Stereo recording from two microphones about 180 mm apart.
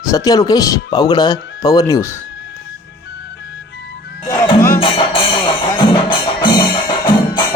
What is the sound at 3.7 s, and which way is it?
Music, 70° left (ahead or behind).